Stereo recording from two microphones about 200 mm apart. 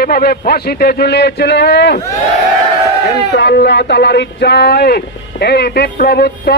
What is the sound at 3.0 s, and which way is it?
A man's voice, 55° left (ahead or behind).